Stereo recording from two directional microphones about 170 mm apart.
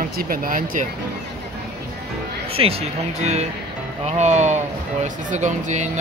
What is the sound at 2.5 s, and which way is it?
Speech, 35° right (ahead or behind).